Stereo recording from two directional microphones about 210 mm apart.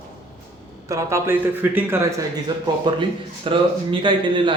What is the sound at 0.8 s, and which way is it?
Speech, 15° right (ahead or behind).